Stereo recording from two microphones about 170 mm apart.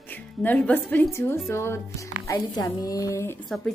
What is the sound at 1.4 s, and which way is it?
Speech, 15° left (ahead or behind).